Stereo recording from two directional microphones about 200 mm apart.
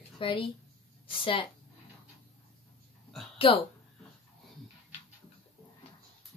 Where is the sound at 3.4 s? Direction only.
25° left (ahead or behind).